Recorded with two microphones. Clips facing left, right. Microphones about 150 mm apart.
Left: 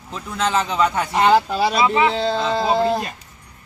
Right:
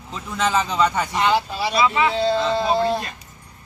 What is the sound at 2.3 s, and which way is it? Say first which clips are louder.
Speech: even; 40° left (ahead or behind).